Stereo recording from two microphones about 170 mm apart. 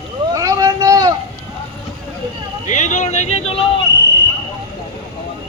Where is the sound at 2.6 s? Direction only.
45° left (ahead or behind).